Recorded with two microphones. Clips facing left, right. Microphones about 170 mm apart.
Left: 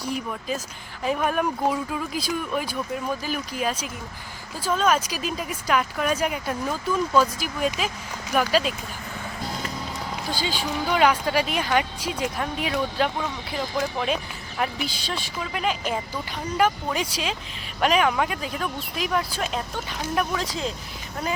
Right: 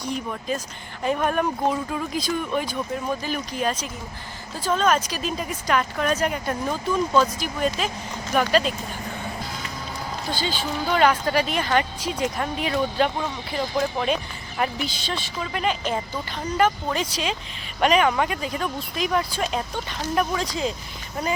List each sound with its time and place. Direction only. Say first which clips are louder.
0.0 s speech: right 1 dB; 5° left (ahead or behind)
10.2 s speech: right 1 dB; 10° left (ahead or behind)